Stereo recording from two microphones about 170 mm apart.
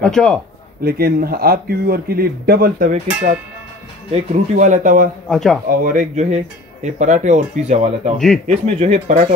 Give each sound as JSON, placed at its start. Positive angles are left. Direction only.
{"t": 0.0, "sound": "a man's voice", "side_deg": 5}
{"t": 0.8, "sound": "a man's voice", "side_deg": -60}
{"t": 4.1, "sound": "speech", "side_deg": -45}
{"t": 5.3, "sound": "a man's voice", "side_deg": 0}
{"t": 5.7, "sound": "speech", "side_deg": -50}